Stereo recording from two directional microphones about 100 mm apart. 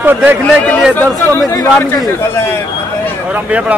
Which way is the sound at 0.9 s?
20° left (ahead or behind).